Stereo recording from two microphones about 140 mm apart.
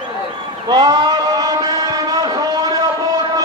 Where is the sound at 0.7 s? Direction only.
30° right (ahead or behind).